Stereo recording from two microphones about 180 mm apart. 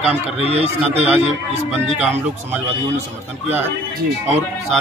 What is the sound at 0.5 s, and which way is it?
Speech, 35° right (ahead or behind).